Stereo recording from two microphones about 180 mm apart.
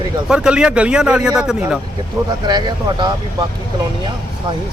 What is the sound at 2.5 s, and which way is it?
Speech, 25° right (ahead or behind).